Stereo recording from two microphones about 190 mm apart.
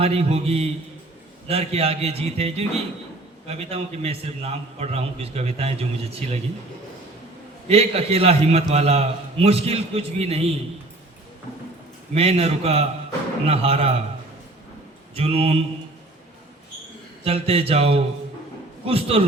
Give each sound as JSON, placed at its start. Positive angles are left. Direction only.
{"t": 0.0, "sound": "a man's voice", "side_deg": -30}
{"t": 7.7, "sound": "a man's voice", "side_deg": -30}
{"t": 12.1, "sound": "a man's voice", "side_deg": -30}
{"t": 15.1, "sound": "a man's voice", "side_deg": -30}
{"t": 17.2, "sound": "a man's voice", "side_deg": -30}